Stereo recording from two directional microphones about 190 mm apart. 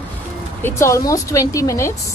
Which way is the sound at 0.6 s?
15° left (ahead or behind).